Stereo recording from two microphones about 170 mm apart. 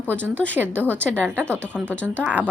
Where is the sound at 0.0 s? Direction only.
10° left (ahead or behind).